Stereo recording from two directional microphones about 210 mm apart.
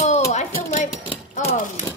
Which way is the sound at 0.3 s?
35° left (ahead or behind).